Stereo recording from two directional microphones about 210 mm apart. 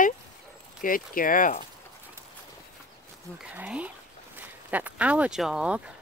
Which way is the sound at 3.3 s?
5° right (ahead or behind).